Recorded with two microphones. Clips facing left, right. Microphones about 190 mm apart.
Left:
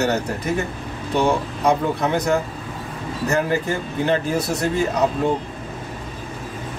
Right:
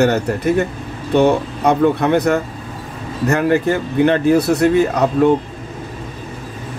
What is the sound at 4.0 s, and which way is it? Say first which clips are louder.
Speech: right 8 dB; 65° right (ahead or behind).